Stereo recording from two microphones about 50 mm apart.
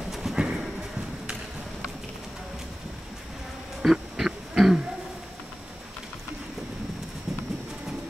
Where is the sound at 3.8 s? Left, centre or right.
Centre.